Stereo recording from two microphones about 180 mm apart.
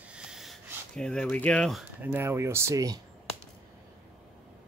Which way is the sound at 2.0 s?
10° right (ahead or behind).